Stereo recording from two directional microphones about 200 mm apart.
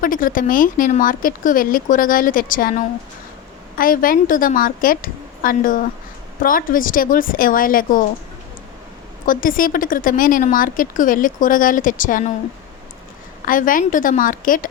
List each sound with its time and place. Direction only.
0.0 s speech: 45° left (ahead or behind)
9.2 s speech: 45° left (ahead or behind)
13.4 s speech: 45° left (ahead or behind)